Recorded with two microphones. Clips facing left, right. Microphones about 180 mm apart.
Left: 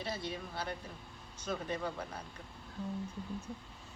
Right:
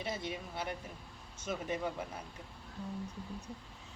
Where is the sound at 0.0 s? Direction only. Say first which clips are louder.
Even; 20° right (ahead or behind).